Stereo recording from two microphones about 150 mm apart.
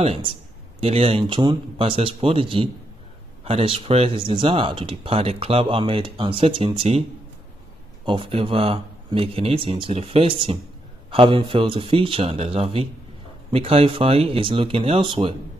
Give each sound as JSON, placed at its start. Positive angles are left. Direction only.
{"t": 0.0, "sound": "speech", "side_deg": -40}
{"t": 8.0, "sound": "speech", "side_deg": -35}